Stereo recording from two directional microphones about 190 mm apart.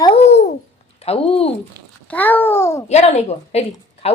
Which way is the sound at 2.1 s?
10° left (ahead or behind).